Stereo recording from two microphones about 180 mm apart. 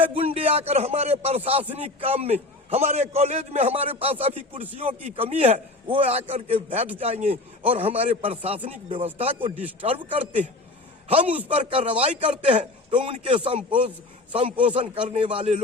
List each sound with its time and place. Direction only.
0.1 s a man's voice: 35° right (ahead or behind)
11.4 s a man's voice: 30° right (ahead or behind)